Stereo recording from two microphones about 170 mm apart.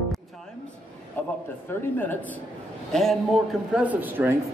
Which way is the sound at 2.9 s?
Centre (ahead or behind).